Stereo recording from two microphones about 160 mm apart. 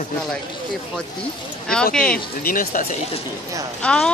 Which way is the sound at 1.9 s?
5° left (ahead or behind).